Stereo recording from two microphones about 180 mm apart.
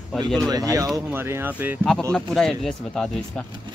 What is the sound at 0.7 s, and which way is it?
Speech, 20° right (ahead or behind).